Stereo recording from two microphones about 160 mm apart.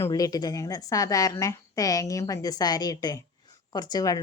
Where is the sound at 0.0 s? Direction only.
25° left (ahead or behind).